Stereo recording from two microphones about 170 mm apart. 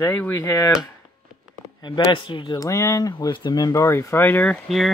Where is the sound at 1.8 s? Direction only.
25° left (ahead or behind).